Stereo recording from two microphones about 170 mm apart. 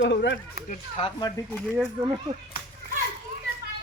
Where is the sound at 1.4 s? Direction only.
10° left (ahead or behind).